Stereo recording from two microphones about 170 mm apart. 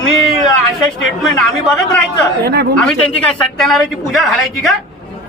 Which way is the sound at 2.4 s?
70° right (ahead or behind).